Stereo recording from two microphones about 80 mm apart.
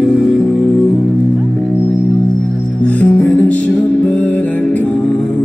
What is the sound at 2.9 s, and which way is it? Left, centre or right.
Music, centre.